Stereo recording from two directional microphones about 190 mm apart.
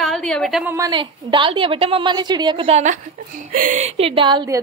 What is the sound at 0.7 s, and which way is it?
A woman's voice, 20° right (ahead or behind).